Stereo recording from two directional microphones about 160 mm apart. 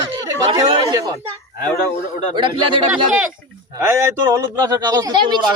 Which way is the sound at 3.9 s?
15° right (ahead or behind).